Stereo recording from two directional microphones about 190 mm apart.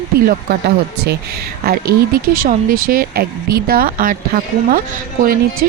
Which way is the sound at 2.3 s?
45° right (ahead or behind).